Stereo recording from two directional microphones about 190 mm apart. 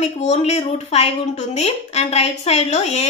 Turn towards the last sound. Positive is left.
turn(degrees=35)  # may be behind; listen again after turning